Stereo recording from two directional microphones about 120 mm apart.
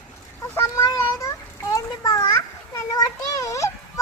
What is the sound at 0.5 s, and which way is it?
Children playing, 25° left (ahead or behind).